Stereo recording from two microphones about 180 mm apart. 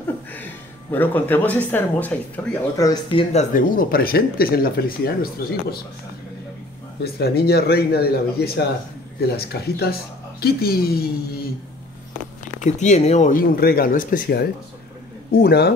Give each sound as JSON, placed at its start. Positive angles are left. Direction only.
{"t": 0.9, "sound": "speech", "side_deg": 10}
{"t": 2.9, "sound": "speech", "side_deg": 30}
{"t": 3.7, "sound": "speech", "side_deg": 55}
{"t": 7.0, "sound": "speech", "side_deg": 65}
{"t": 12.5, "sound": "speech", "side_deg": 40}